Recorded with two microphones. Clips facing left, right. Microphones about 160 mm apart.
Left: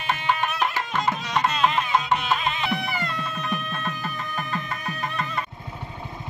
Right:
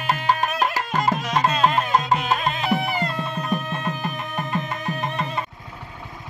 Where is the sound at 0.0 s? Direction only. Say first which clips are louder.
Right 3 dB; 40° right (ahead or behind); by 5.3 s 25° right (ahead or behind).